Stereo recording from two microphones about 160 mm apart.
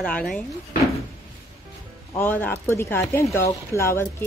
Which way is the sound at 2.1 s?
10° left (ahead or behind).